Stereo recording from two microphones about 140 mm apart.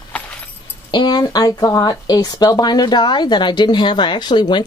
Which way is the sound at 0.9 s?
30° left (ahead or behind).